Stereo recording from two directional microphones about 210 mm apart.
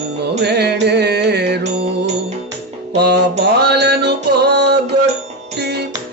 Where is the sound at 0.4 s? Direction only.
50° right (ahead or behind).